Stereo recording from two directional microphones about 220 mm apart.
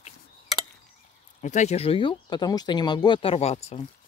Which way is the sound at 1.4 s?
35° left (ahead or behind).